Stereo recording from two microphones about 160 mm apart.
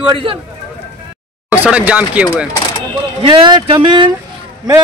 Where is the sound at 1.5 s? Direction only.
10° right (ahead or behind).